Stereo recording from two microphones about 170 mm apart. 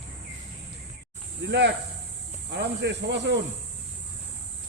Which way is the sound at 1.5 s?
90° right.